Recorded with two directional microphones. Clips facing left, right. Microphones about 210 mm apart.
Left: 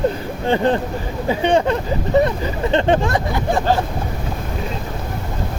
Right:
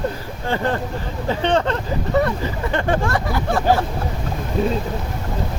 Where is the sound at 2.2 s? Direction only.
20° left (ahead or behind).